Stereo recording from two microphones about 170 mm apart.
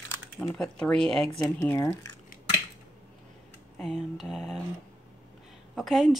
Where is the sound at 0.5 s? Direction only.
5° left (ahead or behind).